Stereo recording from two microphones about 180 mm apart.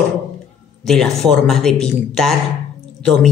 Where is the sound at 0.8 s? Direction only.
Centre (ahead or behind).